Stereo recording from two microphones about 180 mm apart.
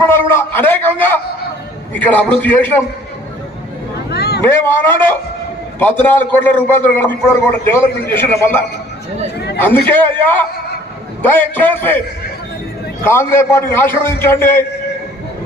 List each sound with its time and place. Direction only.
0.0 s a man's voice: 10° left (ahead or behind)
4.1 s a sound: 65° left (ahead or behind)
4.4 s a man's voice: 15° left (ahead or behind)
13.1 s a man's voice: 15° left (ahead or behind)